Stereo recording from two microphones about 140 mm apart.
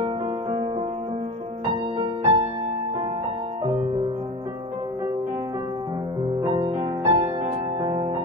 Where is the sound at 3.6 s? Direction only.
35° right (ahead or behind).